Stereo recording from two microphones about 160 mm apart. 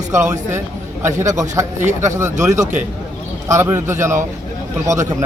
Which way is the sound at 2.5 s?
50° right (ahead or behind).